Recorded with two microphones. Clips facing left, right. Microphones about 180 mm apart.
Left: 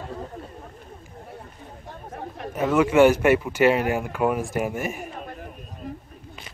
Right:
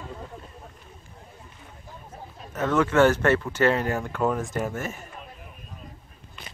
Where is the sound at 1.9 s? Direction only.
70° left (ahead or behind).